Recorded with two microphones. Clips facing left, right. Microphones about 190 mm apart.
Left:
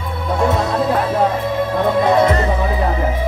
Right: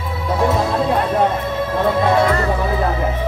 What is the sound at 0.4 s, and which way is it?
Music, centre (ahead or behind).